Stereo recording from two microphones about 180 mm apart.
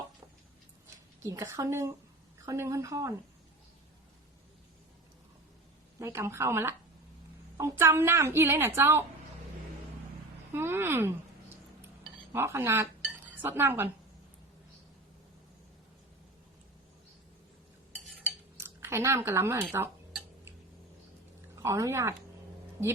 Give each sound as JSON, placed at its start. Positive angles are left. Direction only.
{"t": 1.2, "sound": "a woman's voice", "side_deg": -20}
{"t": 6.0, "sound": "a woman's voice", "side_deg": -15}
{"t": 10.5, "sound": "a woman's voice", "side_deg": -15}
{"t": 12.3, "sound": "a woman's voice", "side_deg": -10}
{"t": 18.5, "sound": "speech", "side_deg": -15}
{"t": 21.6, "sound": "a woman's voice", "side_deg": -15}